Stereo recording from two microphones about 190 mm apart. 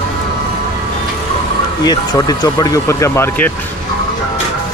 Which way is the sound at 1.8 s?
20° left (ahead or behind).